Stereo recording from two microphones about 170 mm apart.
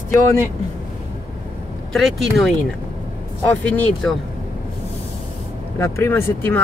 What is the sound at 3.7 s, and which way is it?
Speech, 10° left (ahead or behind).